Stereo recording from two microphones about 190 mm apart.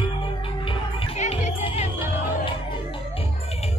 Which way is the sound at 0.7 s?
35° left (ahead or behind).